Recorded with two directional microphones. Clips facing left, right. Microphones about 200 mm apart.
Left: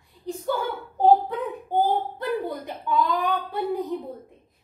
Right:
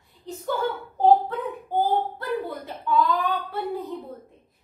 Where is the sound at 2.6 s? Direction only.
15° left (ahead or behind).